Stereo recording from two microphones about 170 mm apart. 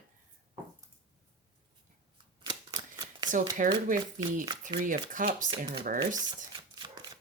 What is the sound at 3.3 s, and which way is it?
Speech, 50° right (ahead or behind).